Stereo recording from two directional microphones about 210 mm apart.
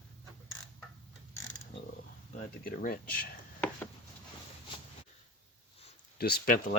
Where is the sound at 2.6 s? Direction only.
45° left (ahead or behind).